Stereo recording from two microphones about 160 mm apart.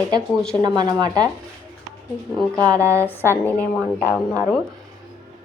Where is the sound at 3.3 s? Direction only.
10° left (ahead or behind).